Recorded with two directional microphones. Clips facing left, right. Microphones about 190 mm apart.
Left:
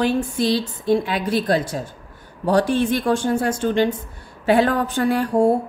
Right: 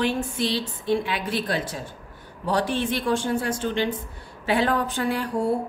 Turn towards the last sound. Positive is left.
turn(degrees=45)  # may be behind; listen again after turning